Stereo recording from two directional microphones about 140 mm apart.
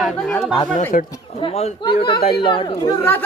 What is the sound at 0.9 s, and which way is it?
Speech, 90° left.